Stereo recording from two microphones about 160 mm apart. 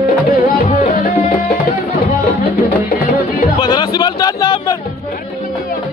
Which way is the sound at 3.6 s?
25° left (ahead or behind).